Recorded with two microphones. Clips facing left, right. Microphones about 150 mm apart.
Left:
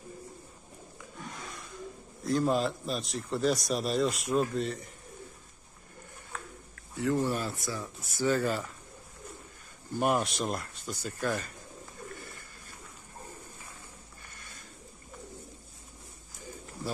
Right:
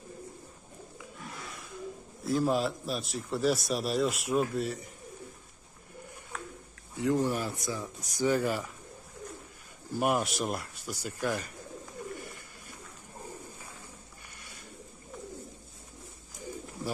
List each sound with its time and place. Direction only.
2.2 s a man's voice: centre (ahead or behind)
7.0 s speech: 15° right (ahead or behind)
9.9 s speech: 5° right (ahead or behind)
12.2 s bird: 15° right (ahead or behind)